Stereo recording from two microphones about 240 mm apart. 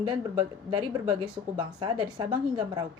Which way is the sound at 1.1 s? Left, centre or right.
Centre.